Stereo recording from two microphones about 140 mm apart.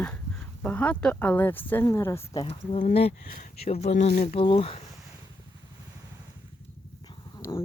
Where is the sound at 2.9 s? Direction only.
50° left (ahead or behind).